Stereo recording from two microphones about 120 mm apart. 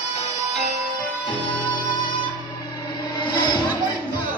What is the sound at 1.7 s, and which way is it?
Music, 40° left (ahead or behind).